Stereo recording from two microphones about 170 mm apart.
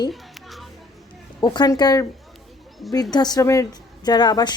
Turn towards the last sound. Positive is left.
turn(degrees=25)  # may be behind; listen again after turning